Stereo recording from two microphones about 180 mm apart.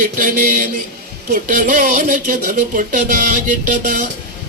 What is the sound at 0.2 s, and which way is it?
Speech, 50° right (ahead or behind).